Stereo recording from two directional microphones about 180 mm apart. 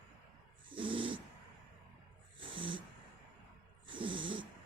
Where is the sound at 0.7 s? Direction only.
30° right (ahead or behind).